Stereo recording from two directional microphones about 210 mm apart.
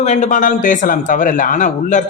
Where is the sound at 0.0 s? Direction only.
35° left (ahead or behind).